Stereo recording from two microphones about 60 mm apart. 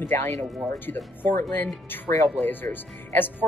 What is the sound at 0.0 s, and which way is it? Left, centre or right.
Speech, left.